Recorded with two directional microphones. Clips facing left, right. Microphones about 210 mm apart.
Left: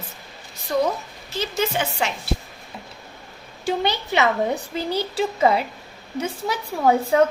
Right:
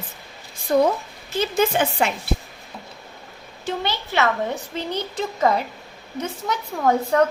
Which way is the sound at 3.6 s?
15° left (ahead or behind).